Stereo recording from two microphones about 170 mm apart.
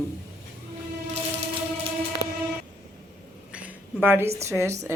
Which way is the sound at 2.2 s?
70° left (ahead or behind).